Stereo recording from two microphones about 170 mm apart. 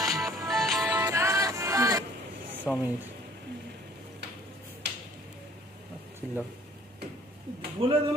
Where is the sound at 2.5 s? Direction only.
10° right (ahead or behind).